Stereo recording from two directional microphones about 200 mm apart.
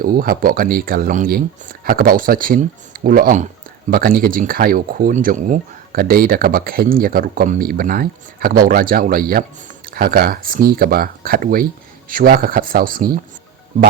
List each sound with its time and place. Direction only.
0.0 s speech: 45° right (ahead or behind)